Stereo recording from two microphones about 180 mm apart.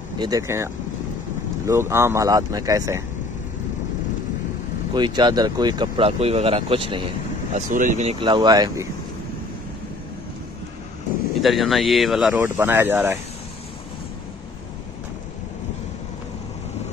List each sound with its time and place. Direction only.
0.2 s speech: 20° right (ahead or behind)
1.7 s speech: 15° right (ahead or behind)
4.9 s speech: 25° right (ahead or behind)
7.5 s speech: 45° right (ahead or behind)
8.2 s speech: 25° right (ahead or behind)
11.4 s speech: centre (ahead or behind)